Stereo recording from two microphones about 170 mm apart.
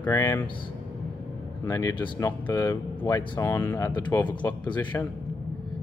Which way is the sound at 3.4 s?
15° left (ahead or behind).